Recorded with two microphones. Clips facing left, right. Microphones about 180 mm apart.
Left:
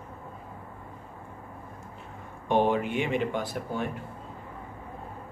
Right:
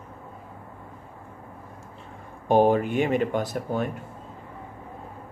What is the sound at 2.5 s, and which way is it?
Speech, 40° right (ahead or behind).